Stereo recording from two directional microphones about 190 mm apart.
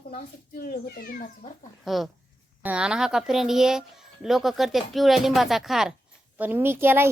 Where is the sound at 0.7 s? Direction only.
50° left (ahead or behind).